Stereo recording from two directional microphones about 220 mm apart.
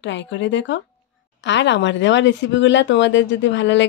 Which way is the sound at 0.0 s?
55° left (ahead or behind).